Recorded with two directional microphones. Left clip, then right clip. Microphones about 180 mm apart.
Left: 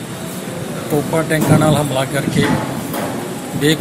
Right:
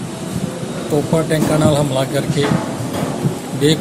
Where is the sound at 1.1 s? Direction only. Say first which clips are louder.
Left 2 dB; 15° right (ahead or behind).